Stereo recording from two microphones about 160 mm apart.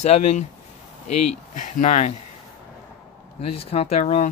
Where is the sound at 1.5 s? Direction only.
55° left (ahead or behind).